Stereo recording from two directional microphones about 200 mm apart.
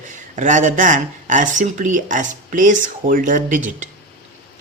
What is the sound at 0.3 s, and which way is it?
Speech, 40° right (ahead or behind).